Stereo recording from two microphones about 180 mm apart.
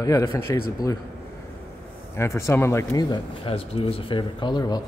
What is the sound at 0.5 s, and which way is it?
Speech, 20° left (ahead or behind).